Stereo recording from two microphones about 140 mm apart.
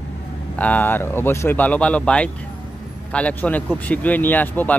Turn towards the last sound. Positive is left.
turn(degrees=10)  # may be behind; listen again after turning